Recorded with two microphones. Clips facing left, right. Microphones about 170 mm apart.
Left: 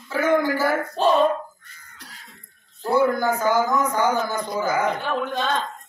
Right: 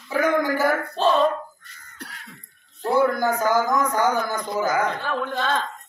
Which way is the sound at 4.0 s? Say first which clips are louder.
Even; 15° right (ahead or behind).